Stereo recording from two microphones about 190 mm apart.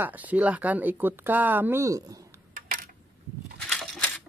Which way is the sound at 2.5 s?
50° right (ahead or behind).